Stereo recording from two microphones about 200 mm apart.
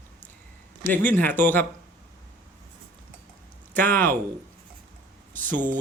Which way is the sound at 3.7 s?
10° left (ahead or behind).